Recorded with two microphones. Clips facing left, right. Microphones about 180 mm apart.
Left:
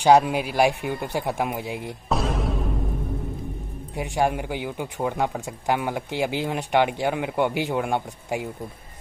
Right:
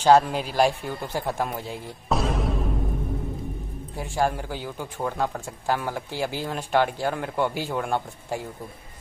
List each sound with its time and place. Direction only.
0.0 s speech: 10° left (ahead or behind)
2.0 s music: centre (ahead or behind)
3.9 s speech: 15° left (ahead or behind)